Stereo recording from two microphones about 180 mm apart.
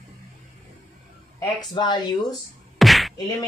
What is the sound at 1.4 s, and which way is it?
Speech, 25° left (ahead or behind).